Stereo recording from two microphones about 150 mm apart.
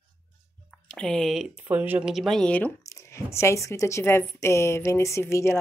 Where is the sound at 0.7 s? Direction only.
5° left (ahead or behind).